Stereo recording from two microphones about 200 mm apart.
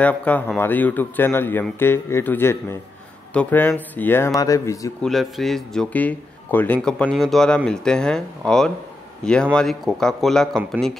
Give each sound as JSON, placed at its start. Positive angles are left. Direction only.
{"t": 0.0, "sound": "speech", "side_deg": 5}
{"t": 5.0, "sound": "speech", "side_deg": 0}